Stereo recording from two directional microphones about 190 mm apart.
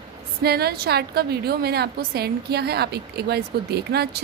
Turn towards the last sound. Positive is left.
turn(degrees=-60)  # may be behind; listen again after turning